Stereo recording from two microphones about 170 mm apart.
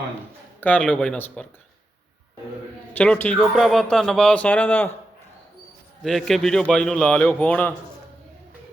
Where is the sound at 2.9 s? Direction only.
10° left (ahead or behind).